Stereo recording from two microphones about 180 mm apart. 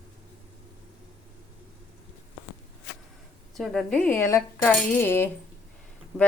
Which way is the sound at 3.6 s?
5° left (ahead or behind).